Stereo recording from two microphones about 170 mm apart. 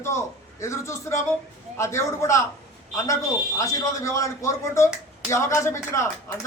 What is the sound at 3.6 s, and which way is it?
A man's voice, 20° left (ahead or behind).